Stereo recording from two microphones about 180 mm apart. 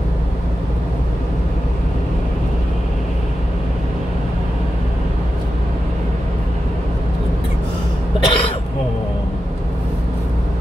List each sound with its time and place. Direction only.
8.2 s throat clearing: 25° left (ahead or behind)